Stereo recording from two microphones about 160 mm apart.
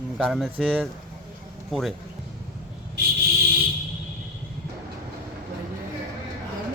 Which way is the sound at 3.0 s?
90° right.